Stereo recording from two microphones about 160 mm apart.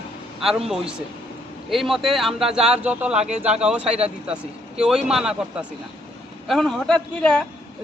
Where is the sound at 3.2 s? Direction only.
45° right (ahead or behind).